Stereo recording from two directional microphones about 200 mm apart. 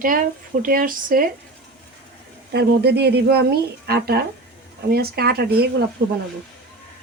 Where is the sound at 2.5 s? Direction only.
55° right (ahead or behind).